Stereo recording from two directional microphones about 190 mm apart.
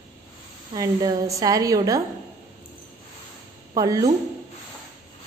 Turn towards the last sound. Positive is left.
turn(degrees=-20)  # may be behind; listen again after turning